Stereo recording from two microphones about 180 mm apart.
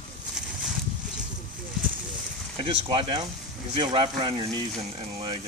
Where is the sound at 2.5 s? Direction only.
30° right (ahead or behind).